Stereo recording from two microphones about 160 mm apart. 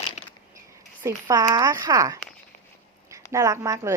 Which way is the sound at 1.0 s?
20° right (ahead or behind).